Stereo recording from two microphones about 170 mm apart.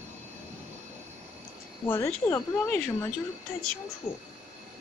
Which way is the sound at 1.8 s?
15° left (ahead or behind).